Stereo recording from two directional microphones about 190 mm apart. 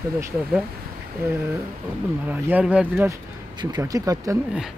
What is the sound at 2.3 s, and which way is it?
Speech, 10° right (ahead or behind).